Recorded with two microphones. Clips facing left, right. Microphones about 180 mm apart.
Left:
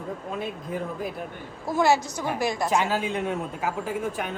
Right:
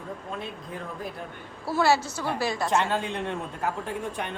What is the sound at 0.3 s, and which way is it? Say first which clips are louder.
Speech: left 6 dB; 5° left (ahead or behind).